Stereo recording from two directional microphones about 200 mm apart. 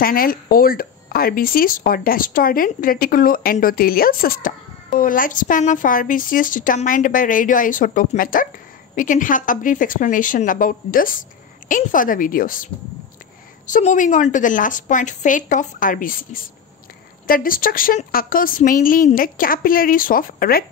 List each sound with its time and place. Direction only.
0.0 s a woman's voice: 45° left (ahead or behind)
13.7 s a woman's voice: 40° left (ahead or behind)